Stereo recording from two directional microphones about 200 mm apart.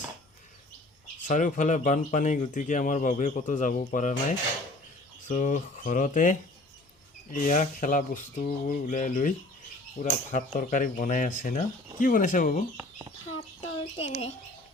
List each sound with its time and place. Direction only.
1.3 s speech: 40° left (ahead or behind)
12.7 s a sound: 20° right (ahead or behind)
13.6 s speech: 30° left (ahead or behind)